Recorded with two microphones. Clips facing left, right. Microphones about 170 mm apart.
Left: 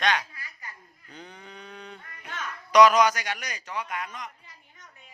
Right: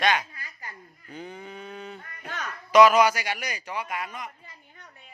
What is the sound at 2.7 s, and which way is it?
A man's voice, 5° right (ahead or behind).